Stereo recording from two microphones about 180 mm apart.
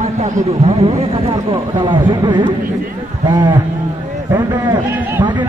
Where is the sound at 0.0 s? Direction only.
40° right (ahead or behind); by 3.5 s 25° right (ahead or behind).